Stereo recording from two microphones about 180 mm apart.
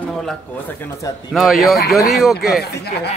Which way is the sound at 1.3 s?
Centre (ahead or behind).